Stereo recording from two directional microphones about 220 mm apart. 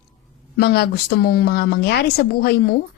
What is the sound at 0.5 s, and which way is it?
Speech, 45° left (ahead or behind).